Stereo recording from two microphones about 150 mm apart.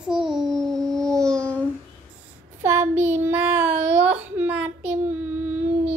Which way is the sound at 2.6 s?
15° right (ahead or behind).